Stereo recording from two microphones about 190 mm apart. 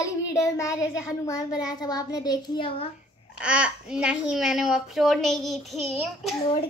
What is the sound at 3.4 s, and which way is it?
A child's voice, 5° right (ahead or behind).